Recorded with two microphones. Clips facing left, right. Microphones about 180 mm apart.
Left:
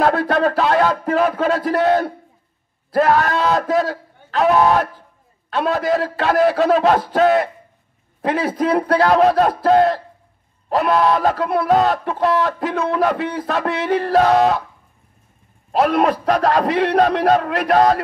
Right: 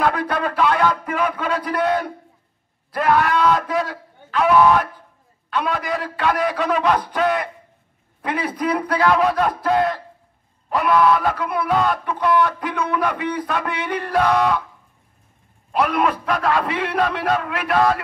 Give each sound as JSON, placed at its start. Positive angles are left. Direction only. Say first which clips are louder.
{"t": 0.0, "sound": "speech", "louder": "left 5 dB", "side_deg": 45}
{"t": 15.7, "sound": "a man's voice", "louder": "left 4 dB", "side_deg": 40}